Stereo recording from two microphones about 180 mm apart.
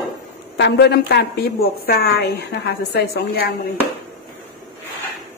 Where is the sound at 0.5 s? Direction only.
70° left (ahead or behind).